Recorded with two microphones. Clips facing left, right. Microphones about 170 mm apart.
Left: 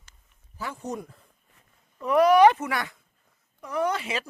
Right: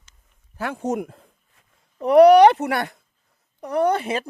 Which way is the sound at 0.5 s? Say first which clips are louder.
Right 8 dB; 65° right (ahead or behind).